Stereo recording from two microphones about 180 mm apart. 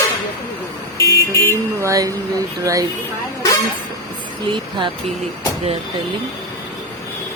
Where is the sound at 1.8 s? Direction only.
20° right (ahead or behind).